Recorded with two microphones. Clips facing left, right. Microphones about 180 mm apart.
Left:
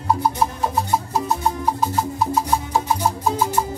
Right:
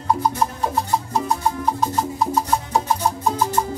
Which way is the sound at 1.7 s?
Centre (ahead or behind).